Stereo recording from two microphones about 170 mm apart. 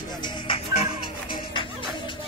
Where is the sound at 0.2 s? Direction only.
30° left (ahead or behind).